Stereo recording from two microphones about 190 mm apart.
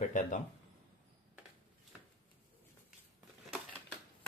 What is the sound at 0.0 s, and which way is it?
Speech, 45° left (ahead or behind).